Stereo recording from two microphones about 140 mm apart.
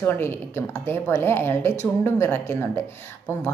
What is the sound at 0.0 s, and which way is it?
A woman's voice, 15° left (ahead or behind).